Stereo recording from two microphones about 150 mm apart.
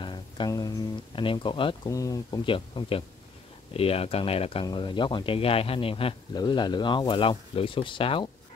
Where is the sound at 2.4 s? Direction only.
35° left (ahead or behind).